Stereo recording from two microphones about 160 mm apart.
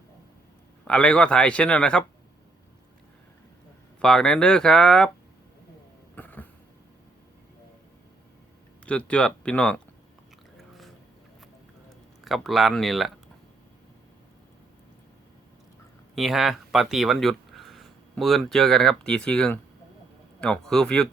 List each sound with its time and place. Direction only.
0.9 s a man's voice: 5° left (ahead or behind)
4.0 s speech: 5° left (ahead or behind)
6.1 s cough: 10° left (ahead or behind)
8.9 s a man's voice: 5° left (ahead or behind)
10.6 s a sound: centre (ahead or behind)
12.2 s speech: centre (ahead or behind)
16.1 s speech: centre (ahead or behind)